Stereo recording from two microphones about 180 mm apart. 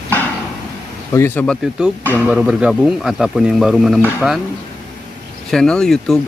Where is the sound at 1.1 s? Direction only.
15° left (ahead or behind).